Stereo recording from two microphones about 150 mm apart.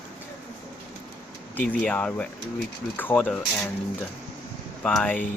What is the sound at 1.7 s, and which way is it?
Speech, 10° left (ahead or behind).